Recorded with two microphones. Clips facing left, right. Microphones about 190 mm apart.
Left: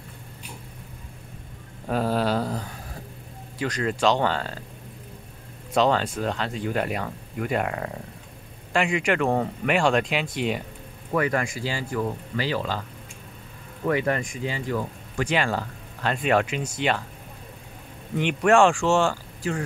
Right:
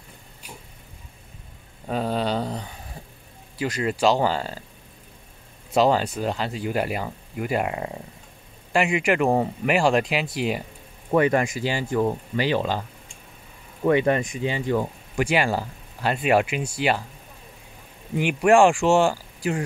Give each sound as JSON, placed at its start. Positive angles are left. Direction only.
{"t": 1.9, "sound": "a sound", "side_deg": 5}
{"t": 3.5, "sound": "speech", "side_deg": -5}
{"t": 5.8, "sound": "speech", "side_deg": -5}
{"t": 11.1, "sound": "speech", "side_deg": -25}
{"t": 13.8, "sound": "speech", "side_deg": -20}
{"t": 15.1, "sound": "speech", "side_deg": -10}
{"t": 18.1, "sound": "speech", "side_deg": -10}